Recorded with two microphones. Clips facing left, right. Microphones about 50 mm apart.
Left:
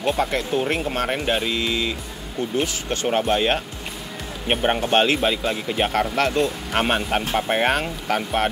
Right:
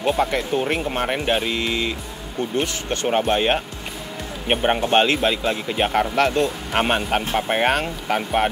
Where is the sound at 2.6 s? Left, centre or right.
Right.